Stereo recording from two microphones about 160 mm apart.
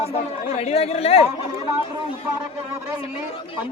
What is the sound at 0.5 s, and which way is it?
Speech, 40° left (ahead or behind).